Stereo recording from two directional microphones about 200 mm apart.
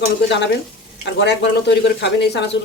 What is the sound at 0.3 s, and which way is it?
Speech, 60° left (ahead or behind).